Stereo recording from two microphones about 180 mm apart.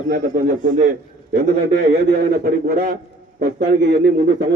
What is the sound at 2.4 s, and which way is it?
Speech, 55° right (ahead or behind).